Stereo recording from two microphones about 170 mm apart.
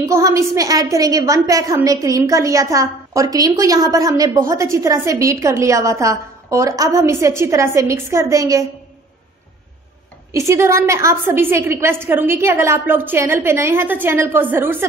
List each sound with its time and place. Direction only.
0.0 s a woman's voice: 15° right (ahead or behind)
10.3 s a woman's voice: 15° right (ahead or behind)